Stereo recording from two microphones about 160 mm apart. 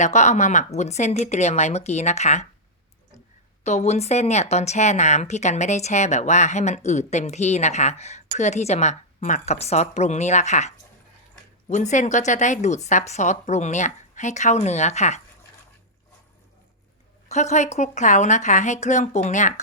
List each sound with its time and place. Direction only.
0.0 s speech: 45° left (ahead or behind)
3.6 s speech: 45° left (ahead or behind)
11.7 s speech: 50° left (ahead or behind)
17.2 s speech: 45° left (ahead or behind)